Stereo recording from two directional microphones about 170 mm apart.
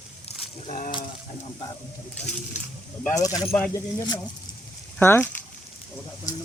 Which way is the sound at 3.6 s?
20° left (ahead or behind).